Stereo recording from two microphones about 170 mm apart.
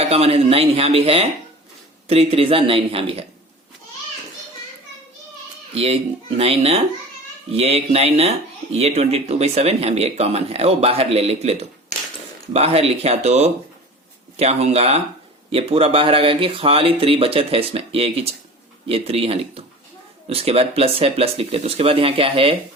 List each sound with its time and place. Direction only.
0.0 s speech: 35° right (ahead or behind)
5.7 s speech: 35° right (ahead or behind)
12.5 s speech: 35° right (ahead or behind)